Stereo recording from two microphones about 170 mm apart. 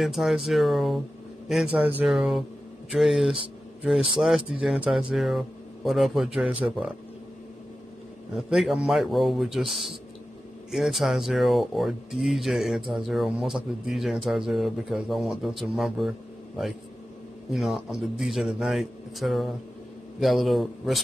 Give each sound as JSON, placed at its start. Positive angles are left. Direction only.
{"t": 0.0, "sound": "speech", "side_deg": 0}
{"t": 8.4, "sound": "speech", "side_deg": 0}
{"t": 17.5, "sound": "speech", "side_deg": 0}